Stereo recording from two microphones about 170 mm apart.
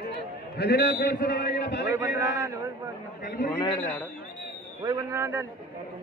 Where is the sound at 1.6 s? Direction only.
90° left.